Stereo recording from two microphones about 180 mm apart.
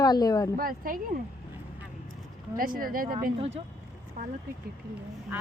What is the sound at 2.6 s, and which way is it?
Speech, 50° right (ahead or behind).